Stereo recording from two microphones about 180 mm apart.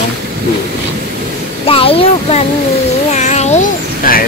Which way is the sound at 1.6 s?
30° left (ahead or behind).